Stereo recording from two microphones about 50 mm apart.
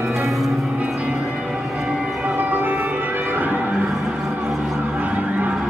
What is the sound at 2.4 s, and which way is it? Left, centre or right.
Music, right.